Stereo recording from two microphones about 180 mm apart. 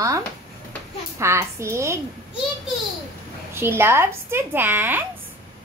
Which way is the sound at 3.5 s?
15° right (ahead or behind).